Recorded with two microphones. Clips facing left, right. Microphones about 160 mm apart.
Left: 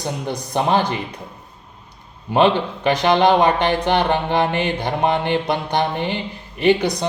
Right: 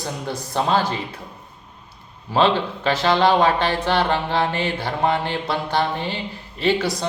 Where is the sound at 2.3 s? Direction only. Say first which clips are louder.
Left 2 dB; 15° left (ahead or behind).